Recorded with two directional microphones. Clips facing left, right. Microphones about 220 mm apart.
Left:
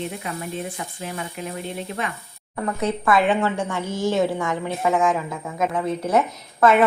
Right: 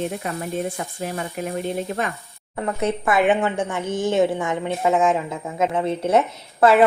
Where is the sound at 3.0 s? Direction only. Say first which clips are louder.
Even; 20° right (ahead or behind).